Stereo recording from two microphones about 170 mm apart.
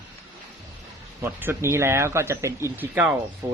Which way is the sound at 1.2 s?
15° right (ahead or behind).